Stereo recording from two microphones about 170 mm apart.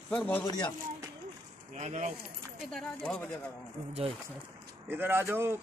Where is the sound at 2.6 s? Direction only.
5° left (ahead or behind).